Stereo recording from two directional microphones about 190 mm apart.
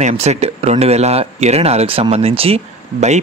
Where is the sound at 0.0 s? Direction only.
35° right (ahead or behind).